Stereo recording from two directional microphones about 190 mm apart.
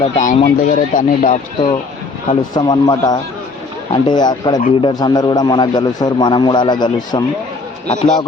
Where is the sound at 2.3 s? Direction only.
25° left (ahead or behind).